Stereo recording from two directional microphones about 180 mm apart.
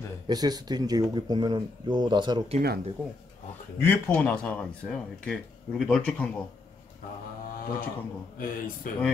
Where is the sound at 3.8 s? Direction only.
10° left (ahead or behind).